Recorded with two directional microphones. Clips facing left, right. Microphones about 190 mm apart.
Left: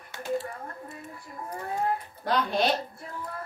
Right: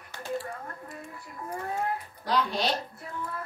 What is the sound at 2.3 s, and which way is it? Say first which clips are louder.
Speech: left 2 dB; 55° left (ahead or behind).